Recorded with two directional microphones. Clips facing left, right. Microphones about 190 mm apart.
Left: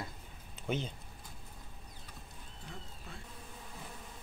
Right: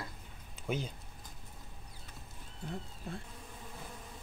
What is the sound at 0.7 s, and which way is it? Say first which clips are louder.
Speech: even; 10° right (ahead or behind).